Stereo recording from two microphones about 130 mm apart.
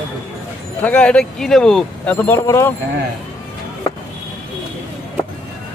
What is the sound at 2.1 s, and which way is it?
Speech, 15° left (ahead or behind).